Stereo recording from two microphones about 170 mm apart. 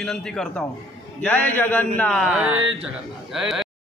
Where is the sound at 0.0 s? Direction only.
5° left (ahead or behind).